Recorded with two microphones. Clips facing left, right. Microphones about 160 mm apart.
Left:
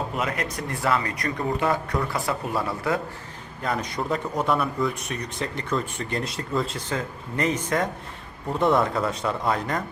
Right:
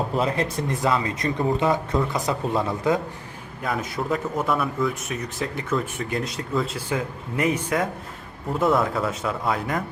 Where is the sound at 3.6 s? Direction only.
5° right (ahead or behind).